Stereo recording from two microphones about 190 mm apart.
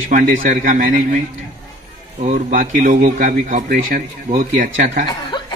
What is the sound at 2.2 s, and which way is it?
A man's voice, 40° right (ahead or behind).